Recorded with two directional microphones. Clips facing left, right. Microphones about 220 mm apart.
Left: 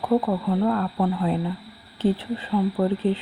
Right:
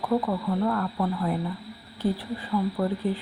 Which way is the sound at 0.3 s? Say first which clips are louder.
Left 4 dB; 30° left (ahead or behind).